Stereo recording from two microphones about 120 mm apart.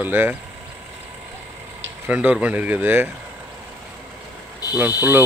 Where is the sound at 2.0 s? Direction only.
15° right (ahead or behind).